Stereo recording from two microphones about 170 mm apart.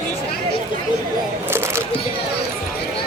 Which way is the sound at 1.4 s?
15° right (ahead or behind).